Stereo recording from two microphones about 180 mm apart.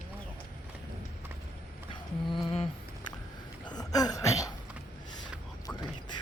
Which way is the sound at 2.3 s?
30° left (ahead or behind).